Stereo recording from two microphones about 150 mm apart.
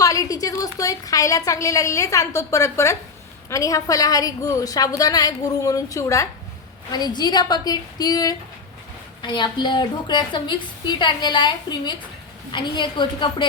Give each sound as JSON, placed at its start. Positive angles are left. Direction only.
{"t": 0.0, "sound": "a woman's voice", "side_deg": 20}